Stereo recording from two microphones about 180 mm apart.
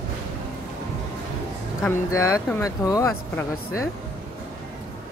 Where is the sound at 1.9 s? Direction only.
15° left (ahead or behind).